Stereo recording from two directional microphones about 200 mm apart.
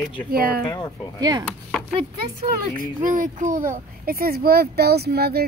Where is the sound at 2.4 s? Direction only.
40° right (ahead or behind).